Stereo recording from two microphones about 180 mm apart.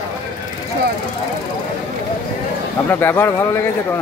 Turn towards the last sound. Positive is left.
turn(degrees=10)  # may be behind; listen again after turning